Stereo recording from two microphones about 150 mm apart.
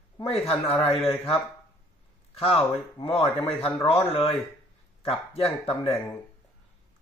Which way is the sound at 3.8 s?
40° left (ahead or behind).